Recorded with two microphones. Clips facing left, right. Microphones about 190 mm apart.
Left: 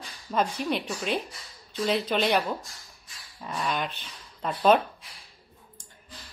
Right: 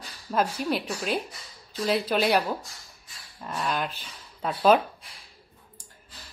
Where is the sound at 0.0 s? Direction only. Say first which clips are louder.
Right 1 dB; 5° right (ahead or behind).